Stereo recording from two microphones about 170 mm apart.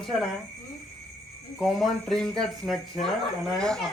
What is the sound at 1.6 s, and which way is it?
Speech, centre (ahead or behind).